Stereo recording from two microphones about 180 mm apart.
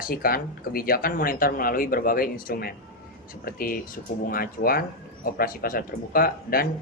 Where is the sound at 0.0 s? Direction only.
55° left (ahead or behind).